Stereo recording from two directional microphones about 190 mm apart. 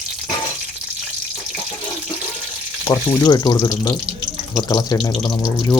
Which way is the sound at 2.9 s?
20° left (ahead or behind).